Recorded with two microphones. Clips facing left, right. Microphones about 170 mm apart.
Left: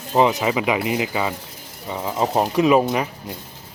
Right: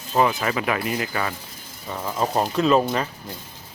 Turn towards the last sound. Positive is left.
turn(degrees=15)  # may be behind; listen again after turning